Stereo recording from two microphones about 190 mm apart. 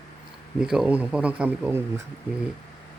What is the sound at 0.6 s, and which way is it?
Speech, 5° right (ahead or behind).